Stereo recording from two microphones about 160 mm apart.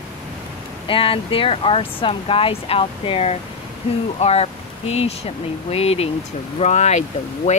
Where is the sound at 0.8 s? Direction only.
35° left (ahead or behind).